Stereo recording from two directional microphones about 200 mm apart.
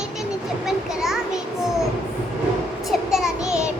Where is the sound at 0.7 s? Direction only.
Centre (ahead or behind).